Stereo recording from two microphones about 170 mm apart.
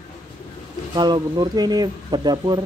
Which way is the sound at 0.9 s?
25° right (ahead or behind).